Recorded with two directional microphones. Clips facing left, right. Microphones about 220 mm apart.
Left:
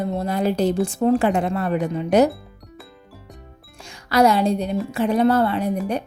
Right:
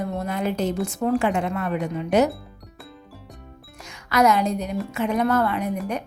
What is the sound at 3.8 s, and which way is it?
Speech, 30° left (ahead or behind).